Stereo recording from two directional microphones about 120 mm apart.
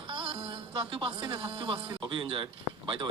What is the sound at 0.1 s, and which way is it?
Music, 45° right (ahead or behind).